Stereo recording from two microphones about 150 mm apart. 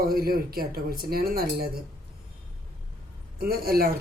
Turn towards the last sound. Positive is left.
turn(degrees=-85)